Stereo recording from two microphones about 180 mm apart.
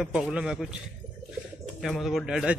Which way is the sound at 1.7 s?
Centre (ahead or behind).